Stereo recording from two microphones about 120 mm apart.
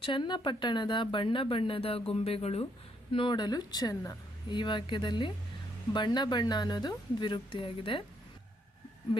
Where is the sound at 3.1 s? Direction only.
45° left (ahead or behind).